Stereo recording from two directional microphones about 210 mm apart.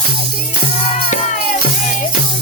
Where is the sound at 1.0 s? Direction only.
35° left (ahead or behind).